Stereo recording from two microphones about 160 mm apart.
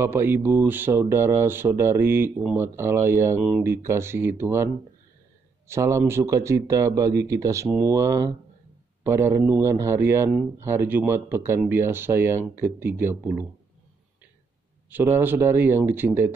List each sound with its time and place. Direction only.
0.0 s speech: 15° right (ahead or behind)
5.7 s speech: 15° right (ahead or behind)
14.9 s speech: 15° right (ahead or behind)